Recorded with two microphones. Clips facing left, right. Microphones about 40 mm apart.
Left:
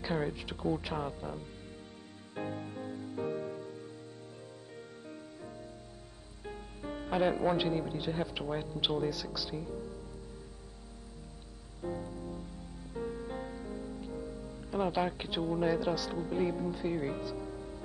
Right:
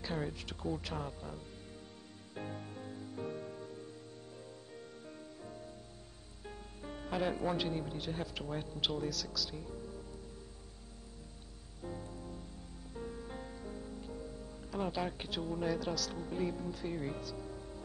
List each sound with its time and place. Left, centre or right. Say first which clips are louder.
0.0 s speech: left 5 dB; centre
2.3 s music: left 6 dB; centre
6.4 s a man's voice: left 5 dB; centre
11.8 s music: left 6 dB; centre